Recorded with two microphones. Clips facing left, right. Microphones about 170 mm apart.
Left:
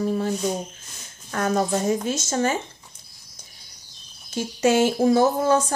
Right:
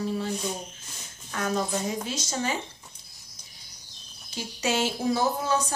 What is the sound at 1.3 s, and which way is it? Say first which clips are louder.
A woman's voice: left 6 dB; 50° left (ahead or behind).